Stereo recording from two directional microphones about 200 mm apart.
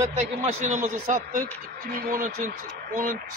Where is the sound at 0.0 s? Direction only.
35° right (ahead or behind).